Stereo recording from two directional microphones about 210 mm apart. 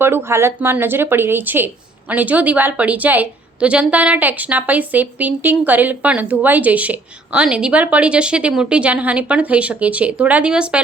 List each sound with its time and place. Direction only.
0.0 s a woman's voice: 10° right (ahead or behind)